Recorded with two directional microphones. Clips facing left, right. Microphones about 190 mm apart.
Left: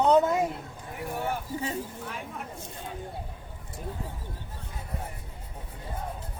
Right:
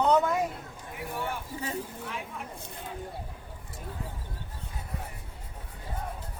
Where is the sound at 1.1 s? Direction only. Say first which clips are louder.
Left 3 dB; 40° left (ahead or behind).